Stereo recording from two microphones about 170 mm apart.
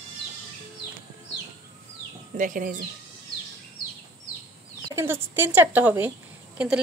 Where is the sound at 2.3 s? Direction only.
50° right (ahead or behind).